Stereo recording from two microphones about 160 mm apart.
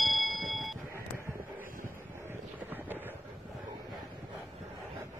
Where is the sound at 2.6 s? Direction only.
10° right (ahead or behind).